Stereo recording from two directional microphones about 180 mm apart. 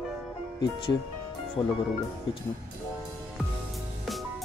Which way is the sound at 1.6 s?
30° left (ahead or behind).